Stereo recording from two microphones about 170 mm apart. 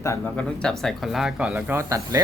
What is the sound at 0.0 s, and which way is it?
Speech, 15° left (ahead or behind).